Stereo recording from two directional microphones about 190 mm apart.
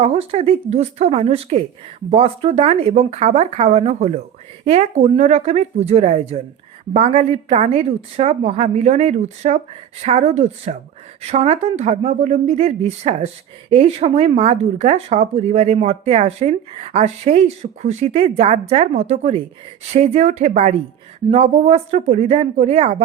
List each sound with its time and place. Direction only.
0.0 s speech: 35° right (ahead or behind)